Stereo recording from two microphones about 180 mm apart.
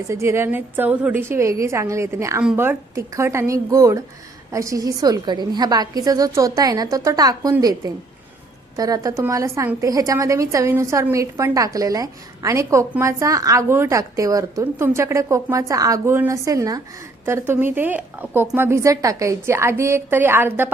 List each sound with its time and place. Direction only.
0.1 s a woman's voice: 15° right (ahead or behind)